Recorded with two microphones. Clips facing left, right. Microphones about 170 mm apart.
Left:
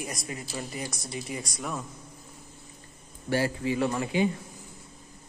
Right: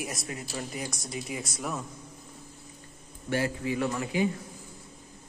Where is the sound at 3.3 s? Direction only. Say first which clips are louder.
Left 2 dB; 30° left (ahead or behind).